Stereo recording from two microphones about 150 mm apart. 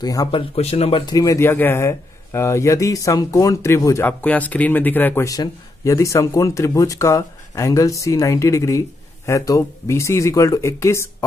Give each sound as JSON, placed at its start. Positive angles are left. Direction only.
{"t": 0.0, "sound": "speech", "side_deg": 25}
{"t": 0.3, "sound": "speech", "side_deg": 40}
{"t": 1.0, "sound": "speech", "side_deg": 20}